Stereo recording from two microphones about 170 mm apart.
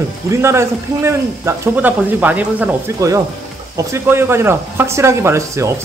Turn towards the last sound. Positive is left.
turn(degrees=-15)  # may be behind; listen again after turning